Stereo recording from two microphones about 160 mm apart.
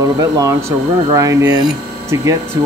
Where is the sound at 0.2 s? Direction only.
20° right (ahead or behind).